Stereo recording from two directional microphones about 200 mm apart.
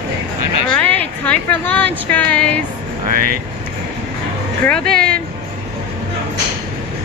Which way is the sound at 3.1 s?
45° right (ahead or behind).